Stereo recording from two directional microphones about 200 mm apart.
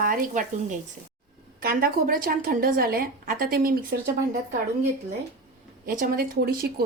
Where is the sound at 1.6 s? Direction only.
45° right (ahead or behind).